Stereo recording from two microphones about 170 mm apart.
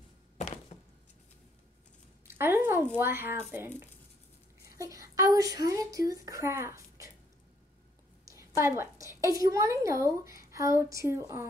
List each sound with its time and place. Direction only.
0.7 s a sound: 40° left (ahead or behind)
2.2 s speech: 15° right (ahead or behind)
8.3 s a woman's voice: 15° right (ahead or behind)